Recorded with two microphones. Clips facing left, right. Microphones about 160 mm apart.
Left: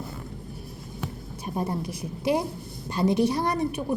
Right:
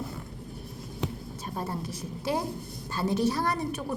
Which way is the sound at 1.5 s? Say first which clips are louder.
Left 5 dB; 15° left (ahead or behind).